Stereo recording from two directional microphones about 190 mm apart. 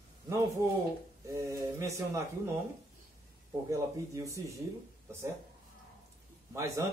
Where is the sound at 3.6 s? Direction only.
15° right (ahead or behind).